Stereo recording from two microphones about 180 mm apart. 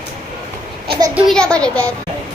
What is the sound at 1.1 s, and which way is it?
Speech, centre (ahead or behind).